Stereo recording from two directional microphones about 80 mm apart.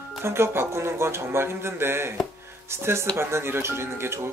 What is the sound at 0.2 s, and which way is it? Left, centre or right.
Speech, right.